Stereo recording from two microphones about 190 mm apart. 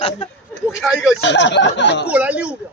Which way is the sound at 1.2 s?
70° left (ahead or behind).